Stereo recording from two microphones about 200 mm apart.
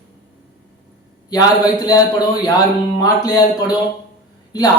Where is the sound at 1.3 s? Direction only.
20° left (ahead or behind).